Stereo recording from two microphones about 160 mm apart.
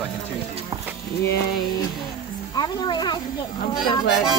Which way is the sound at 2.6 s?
25° left (ahead or behind).